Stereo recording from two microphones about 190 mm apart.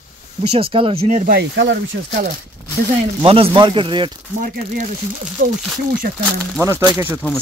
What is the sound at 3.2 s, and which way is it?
Speech, 30° right (ahead or behind).